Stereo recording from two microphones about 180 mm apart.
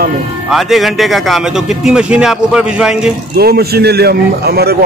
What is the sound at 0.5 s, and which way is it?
A man's voice, centre (ahead or behind).